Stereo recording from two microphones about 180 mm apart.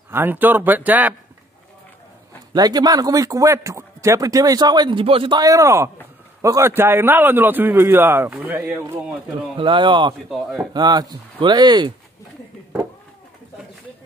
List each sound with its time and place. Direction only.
0.1 s a man's voice: 10° right (ahead or behind)
2.5 s a man's voice: 20° right (ahead or behind)
9.6 s speech: 25° right (ahead or behind)
10.3 s speech: centre (ahead or behind)
10.7 s speech: 25° right (ahead or behind)